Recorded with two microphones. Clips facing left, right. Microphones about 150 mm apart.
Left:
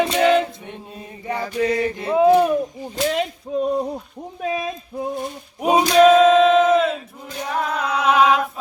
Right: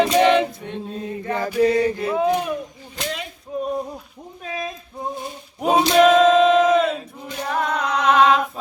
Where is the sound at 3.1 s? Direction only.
90° left.